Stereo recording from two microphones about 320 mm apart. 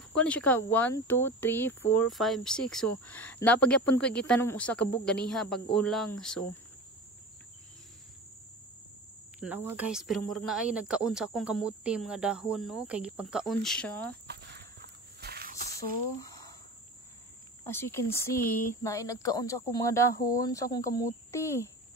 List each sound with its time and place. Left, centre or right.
0.1 s speech: centre
9.4 s speech: centre
14.2 s walk: right
16.0 s speech: left
17.6 s speech: centre